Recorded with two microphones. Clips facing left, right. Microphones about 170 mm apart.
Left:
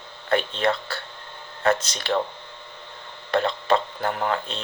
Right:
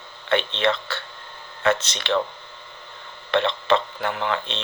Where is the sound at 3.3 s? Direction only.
35° left (ahead or behind).